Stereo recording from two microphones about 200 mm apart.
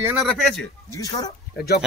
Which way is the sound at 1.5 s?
50° left (ahead or behind).